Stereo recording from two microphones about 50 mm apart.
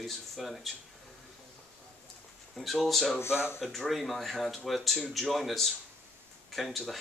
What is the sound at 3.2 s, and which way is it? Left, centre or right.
Speech, left.